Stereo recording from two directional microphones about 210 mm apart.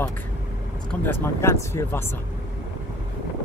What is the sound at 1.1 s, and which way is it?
Speech, 10° left (ahead or behind).